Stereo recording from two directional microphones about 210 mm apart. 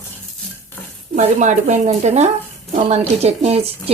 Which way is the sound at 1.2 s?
35° right (ahead or behind).